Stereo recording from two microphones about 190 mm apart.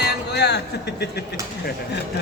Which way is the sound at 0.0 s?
60° left (ahead or behind).